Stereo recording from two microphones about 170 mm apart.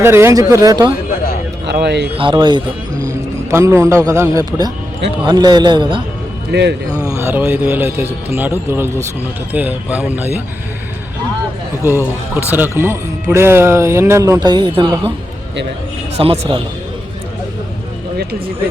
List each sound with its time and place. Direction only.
0.0 s speech: 15° right (ahead or behind)
1.6 s speech: 80° right
2.1 s a man's voice: 30° right (ahead or behind)
6.5 s speech: 80° right
6.9 s speech: 15° left (ahead or behind)
7.2 s speech: 10° right (ahead or behind)
11.8 s speech: 15° right (ahead or behind); by 15.1 s 30° right (ahead or behind)
16.1 s a man's voice: 35° right (ahead or behind)